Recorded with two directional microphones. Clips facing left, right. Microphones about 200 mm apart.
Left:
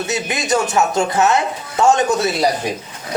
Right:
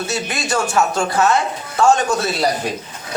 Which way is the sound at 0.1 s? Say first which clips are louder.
Left 6 dB; 20° left (ahead or behind).